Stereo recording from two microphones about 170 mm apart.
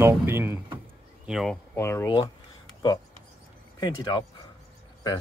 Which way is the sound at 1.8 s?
15° left (ahead or behind).